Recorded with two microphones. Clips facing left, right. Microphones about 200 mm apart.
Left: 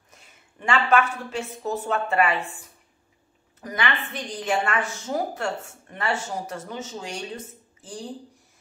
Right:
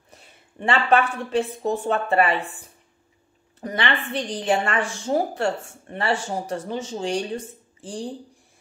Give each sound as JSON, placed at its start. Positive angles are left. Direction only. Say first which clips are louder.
{"t": 0.1, "sound": "a woman's voice", "louder": "right 5 dB", "side_deg": -35}
{"t": 3.6, "sound": "a woman's voice", "louder": "right 3 dB", "side_deg": -30}